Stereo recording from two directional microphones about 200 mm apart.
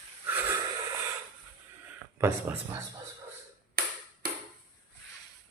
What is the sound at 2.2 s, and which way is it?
Speech, 10° right (ahead or behind).